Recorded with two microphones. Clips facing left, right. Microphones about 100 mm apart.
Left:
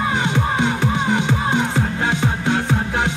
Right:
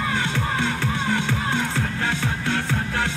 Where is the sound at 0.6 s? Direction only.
20° left (ahead or behind).